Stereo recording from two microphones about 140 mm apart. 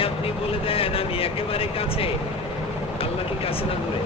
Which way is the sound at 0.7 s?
40° left (ahead or behind).